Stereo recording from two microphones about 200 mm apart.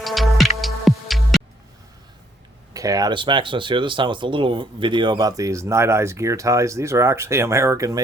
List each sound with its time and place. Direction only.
0.0 s music: centre (ahead or behind)
2.7 s speech: 15° right (ahead or behind)